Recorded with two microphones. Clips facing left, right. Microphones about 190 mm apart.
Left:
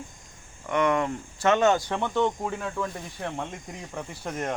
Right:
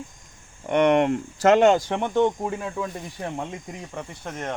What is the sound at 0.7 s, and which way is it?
Speech, 65° right (ahead or behind).